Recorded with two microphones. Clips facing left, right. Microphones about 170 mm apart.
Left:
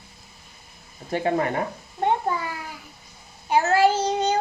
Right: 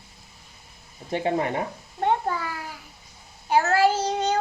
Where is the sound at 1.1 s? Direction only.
20° right (ahead or behind).